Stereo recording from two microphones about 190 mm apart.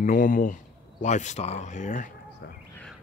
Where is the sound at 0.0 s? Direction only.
45° left (ahead or behind).